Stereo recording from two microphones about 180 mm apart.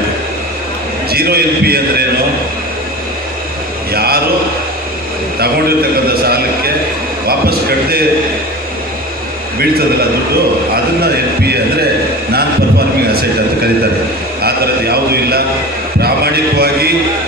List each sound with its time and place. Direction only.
1.1 s a man's voice: 60° right (ahead or behind)
3.9 s a man's voice: 60° right (ahead or behind)
6.2 s a man's voice: 60° right (ahead or behind)
7.2 s a sound: 60° right (ahead or behind)
10.7 s a man's voice: 60° right (ahead or behind)
14.4 s a man's voice: 60° right (ahead or behind)
16.0 s a sound: 60° right (ahead or behind)